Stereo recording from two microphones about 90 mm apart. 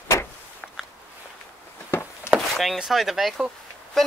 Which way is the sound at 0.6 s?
10° left (ahead or behind).